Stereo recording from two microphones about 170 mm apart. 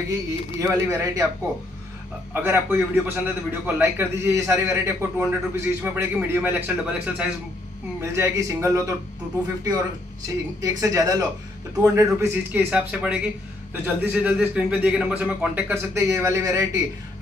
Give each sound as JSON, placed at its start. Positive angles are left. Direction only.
{"t": 0.1, "sound": "speech", "side_deg": -15}
{"t": 2.3, "sound": "a man's voice", "side_deg": -15}
{"t": 10.2, "sound": "a man's voice", "side_deg": -20}